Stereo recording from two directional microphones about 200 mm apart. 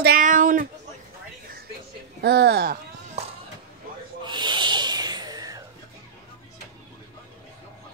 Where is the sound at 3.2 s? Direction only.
35° right (ahead or behind).